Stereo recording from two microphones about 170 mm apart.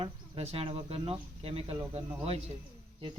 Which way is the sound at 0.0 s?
35° right (ahead or behind).